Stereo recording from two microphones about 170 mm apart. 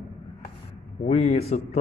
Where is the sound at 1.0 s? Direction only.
40° left (ahead or behind).